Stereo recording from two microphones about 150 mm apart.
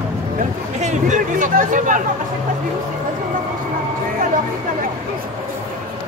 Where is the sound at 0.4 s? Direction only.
50° right (ahead or behind).